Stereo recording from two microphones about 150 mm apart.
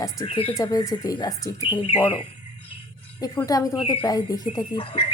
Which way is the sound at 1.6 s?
35° left (ahead or behind).